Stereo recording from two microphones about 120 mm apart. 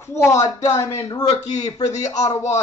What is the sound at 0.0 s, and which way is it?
Speech, 20° left (ahead or behind).